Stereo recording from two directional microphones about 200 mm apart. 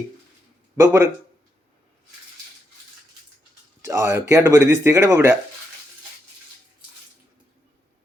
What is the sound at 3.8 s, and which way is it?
Speech, 15° right (ahead or behind).